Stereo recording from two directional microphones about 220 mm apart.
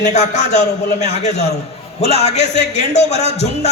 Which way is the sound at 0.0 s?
30° left (ahead or behind).